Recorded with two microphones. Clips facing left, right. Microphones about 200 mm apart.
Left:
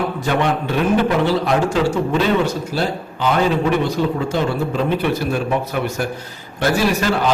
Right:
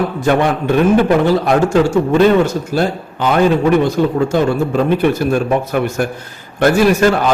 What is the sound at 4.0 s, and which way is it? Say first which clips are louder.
A man's voice: right 5 dB; 50° right (ahead or behind).